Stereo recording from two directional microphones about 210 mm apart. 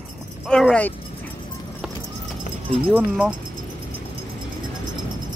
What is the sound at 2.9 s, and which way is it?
Speech, 5° right (ahead or behind).